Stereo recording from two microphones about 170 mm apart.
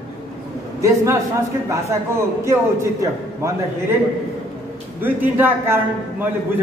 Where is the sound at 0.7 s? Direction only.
20° right (ahead or behind).